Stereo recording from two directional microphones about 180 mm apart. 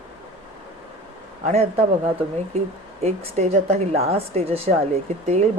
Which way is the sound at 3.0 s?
35° right (ahead or behind).